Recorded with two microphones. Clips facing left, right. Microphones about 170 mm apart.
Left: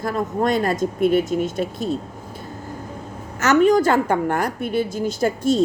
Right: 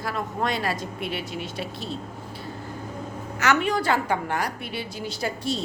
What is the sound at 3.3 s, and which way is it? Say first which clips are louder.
A woman's voice: left 8 dB; 45° left (ahead or behind).